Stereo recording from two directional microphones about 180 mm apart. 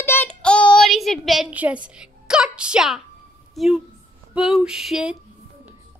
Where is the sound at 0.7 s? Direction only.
Centre (ahead or behind).